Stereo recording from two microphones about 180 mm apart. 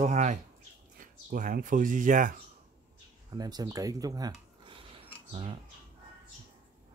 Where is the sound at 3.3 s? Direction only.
20° right (ahead or behind).